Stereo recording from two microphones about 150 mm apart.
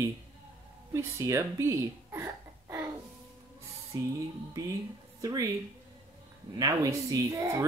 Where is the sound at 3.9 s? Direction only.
25° right (ahead or behind).